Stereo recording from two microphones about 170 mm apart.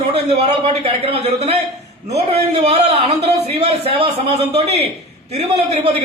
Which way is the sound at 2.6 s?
40° right (ahead or behind).